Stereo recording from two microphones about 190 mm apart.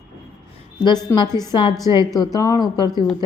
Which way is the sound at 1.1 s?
20° left (ahead or behind).